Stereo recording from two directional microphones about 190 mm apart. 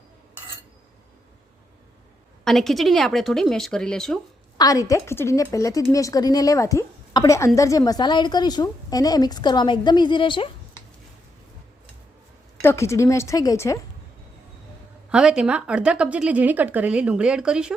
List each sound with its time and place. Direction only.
2.4 s a woman's voice: centre (ahead or behind)
4.5 s a woman's voice: 20° left (ahead or behind)
12.6 s a woman's voice: 15° left (ahead or behind)
15.1 s a woman's voice: 5° right (ahead or behind)